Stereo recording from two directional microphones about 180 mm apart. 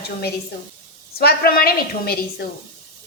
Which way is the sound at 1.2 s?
60° left (ahead or behind).